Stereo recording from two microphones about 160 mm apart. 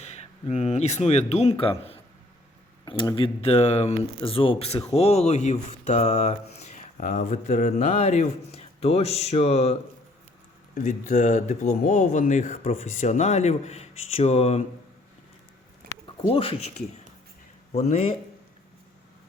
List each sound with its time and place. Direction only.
0.0 s speech: 45° left (ahead or behind)
2.8 s speech: 30° left (ahead or behind)
10.8 s speech: 50° left (ahead or behind)
15.8 s a sound: 70° right (ahead or behind)
16.2 s speech: 35° left (ahead or behind)
17.7 s speech: 45° left (ahead or behind)